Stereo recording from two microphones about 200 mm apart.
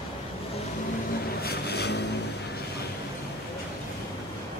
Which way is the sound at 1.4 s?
55° left (ahead or behind).